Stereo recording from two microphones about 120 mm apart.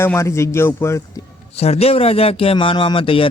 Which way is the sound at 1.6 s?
60° left (ahead or behind).